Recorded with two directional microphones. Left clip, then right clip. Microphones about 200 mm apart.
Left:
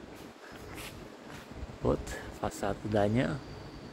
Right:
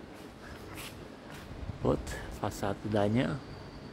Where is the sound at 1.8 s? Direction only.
10° right (ahead or behind).